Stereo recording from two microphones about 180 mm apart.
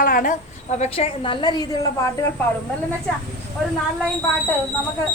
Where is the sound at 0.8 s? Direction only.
35° left (ahead or behind).